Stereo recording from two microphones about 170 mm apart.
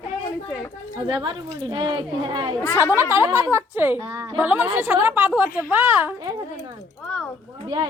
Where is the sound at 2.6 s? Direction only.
15° left (ahead or behind).